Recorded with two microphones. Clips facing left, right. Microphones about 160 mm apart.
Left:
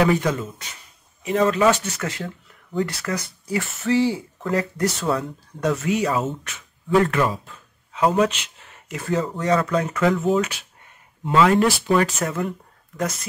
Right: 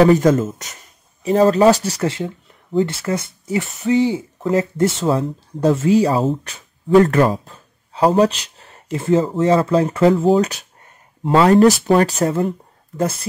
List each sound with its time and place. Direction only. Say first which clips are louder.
0.0 s speech: right 7 dB; 40° right (ahead or behind)
2.1 s speech: right 6 dB; 25° right (ahead or behind)